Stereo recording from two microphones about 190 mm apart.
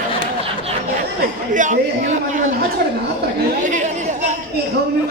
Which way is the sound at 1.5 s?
40° right (ahead or behind).